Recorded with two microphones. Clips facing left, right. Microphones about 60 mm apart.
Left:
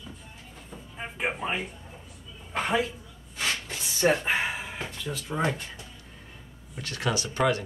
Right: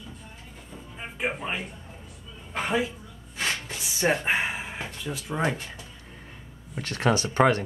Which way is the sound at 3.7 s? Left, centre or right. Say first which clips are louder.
Left 2 dB; centre.